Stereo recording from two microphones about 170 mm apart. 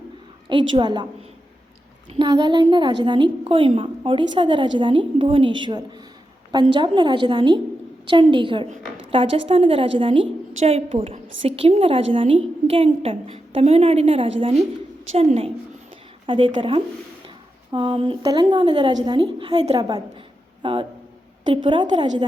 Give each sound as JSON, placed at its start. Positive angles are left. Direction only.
{"t": 0.7, "sound": "speech", "side_deg": -25}
{"t": 2.1, "sound": "a woman's voice", "side_deg": -25}